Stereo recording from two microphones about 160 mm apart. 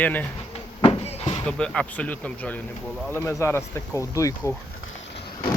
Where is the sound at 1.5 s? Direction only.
5° left (ahead or behind).